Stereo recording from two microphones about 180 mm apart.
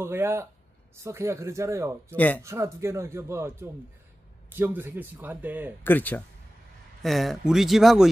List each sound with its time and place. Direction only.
0.0 s speech: 15° right (ahead or behind)
2.1 s speech: 10° left (ahead or behind)
2.4 s speech: 15° right (ahead or behind)
5.9 s speech: 10° left (ahead or behind)